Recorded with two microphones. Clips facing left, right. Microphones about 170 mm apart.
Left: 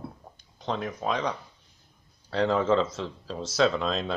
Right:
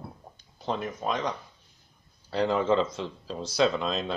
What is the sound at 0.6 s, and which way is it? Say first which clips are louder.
Speech: even; 5° right (ahead or behind).